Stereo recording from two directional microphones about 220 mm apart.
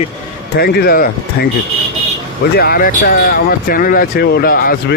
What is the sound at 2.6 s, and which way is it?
Speech, 45° left (ahead or behind).